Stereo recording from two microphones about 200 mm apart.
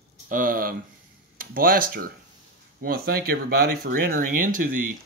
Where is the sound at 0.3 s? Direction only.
45° right (ahead or behind).